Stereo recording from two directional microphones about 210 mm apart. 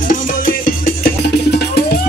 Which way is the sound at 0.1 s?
40° left (ahead or behind).